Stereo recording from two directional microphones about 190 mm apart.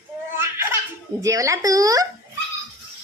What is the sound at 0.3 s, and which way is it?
Laughter, 10° right (ahead or behind).